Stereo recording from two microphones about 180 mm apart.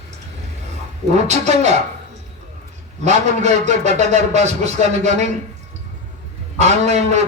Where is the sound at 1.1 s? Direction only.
40° right (ahead or behind).